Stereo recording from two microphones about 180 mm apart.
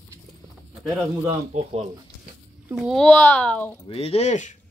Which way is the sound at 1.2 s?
30° right (ahead or behind).